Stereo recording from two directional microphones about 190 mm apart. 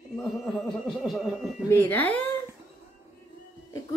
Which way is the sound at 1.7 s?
10° left (ahead or behind).